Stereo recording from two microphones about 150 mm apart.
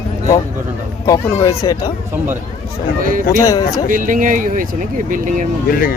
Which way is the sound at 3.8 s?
60° right (ahead or behind).